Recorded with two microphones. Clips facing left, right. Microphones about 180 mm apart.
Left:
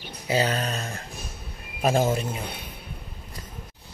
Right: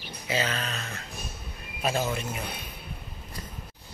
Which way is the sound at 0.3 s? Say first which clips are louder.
Left 5 dB; 35° left (ahead or behind).